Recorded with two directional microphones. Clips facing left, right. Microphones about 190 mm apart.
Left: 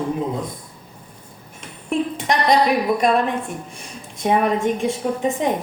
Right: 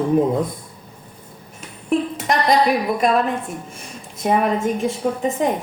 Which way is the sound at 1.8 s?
Centre (ahead or behind).